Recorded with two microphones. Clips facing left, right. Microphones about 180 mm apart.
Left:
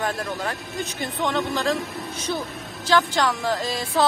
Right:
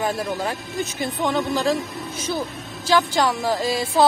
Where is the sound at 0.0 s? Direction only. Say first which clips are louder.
Right 3 dB; 10° right (ahead or behind).